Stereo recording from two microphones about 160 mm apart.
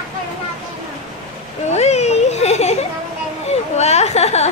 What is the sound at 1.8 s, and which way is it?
Speech, 45° left (ahead or behind).